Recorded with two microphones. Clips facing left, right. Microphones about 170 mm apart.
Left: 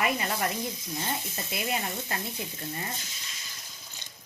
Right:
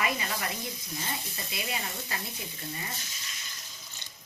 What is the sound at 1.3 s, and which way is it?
A woman's voice, 50° left (ahead or behind).